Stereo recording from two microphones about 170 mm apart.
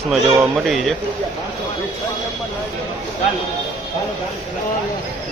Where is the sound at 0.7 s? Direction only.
Centre (ahead or behind).